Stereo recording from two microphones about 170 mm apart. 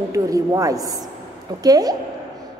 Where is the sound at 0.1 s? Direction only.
20° right (ahead or behind).